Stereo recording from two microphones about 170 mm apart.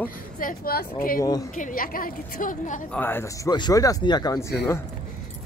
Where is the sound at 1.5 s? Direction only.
50° left (ahead or behind).